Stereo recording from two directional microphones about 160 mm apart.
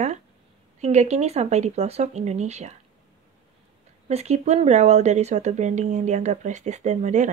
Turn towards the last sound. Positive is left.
turn(degrees=-50)  # may be behind; listen again after turning